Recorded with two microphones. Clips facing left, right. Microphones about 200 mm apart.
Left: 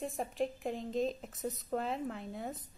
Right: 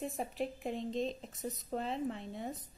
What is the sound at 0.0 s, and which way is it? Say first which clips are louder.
A woman's voice: left 2 dB; centre (ahead or behind).